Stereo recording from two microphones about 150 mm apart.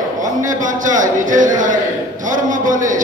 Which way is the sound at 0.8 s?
60° right (ahead or behind).